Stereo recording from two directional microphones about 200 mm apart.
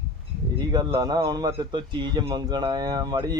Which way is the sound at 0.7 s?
20° right (ahead or behind).